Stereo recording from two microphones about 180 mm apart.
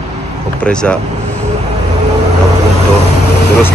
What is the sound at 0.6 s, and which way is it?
Speech, 5° left (ahead or behind).